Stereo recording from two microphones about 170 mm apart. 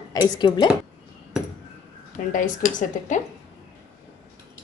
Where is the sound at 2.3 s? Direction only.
50° left (ahead or behind).